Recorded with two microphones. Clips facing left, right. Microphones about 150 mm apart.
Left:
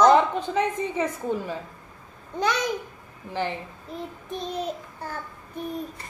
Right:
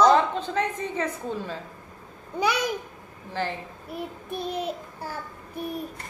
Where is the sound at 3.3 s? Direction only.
15° left (ahead or behind).